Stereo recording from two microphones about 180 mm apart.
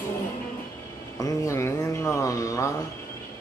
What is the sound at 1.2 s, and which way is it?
Mantra, 15° left (ahead or behind).